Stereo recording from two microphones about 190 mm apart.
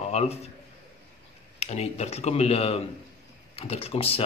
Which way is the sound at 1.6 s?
35° left (ahead or behind).